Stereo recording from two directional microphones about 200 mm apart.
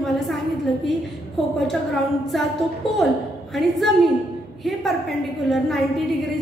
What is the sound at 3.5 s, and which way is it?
Speech, centre (ahead or behind).